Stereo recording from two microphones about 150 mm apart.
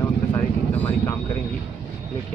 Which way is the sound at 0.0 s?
15° left (ahead or behind).